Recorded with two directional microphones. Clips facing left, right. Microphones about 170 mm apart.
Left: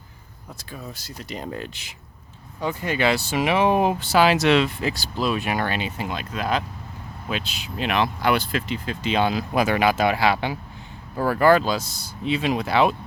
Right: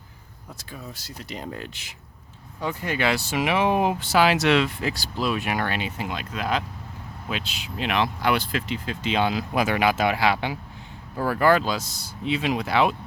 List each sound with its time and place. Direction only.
0.5 s speech: 40° left (ahead or behind)
1.5 s speech: 25° left (ahead or behind)